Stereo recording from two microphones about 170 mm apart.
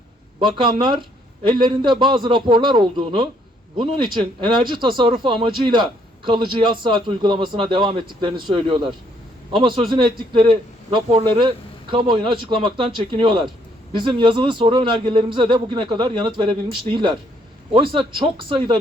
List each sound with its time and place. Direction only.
0.3 s speech: 30° right (ahead or behind)